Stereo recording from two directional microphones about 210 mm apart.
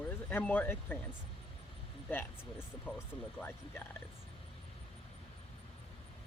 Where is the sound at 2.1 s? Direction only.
10° left (ahead or behind).